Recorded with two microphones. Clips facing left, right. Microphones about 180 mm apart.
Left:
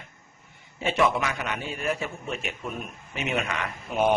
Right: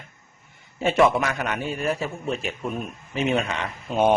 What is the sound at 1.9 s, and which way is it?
Speech, 35° right (ahead or behind).